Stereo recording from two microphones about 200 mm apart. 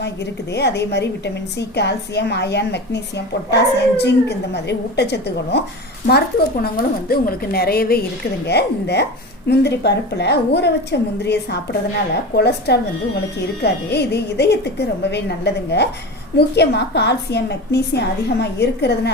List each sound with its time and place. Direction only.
0.5 s a woman's voice: 55° left (ahead or behind)